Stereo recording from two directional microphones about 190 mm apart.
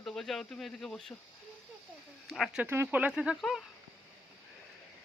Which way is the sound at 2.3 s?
Centre (ahead or behind).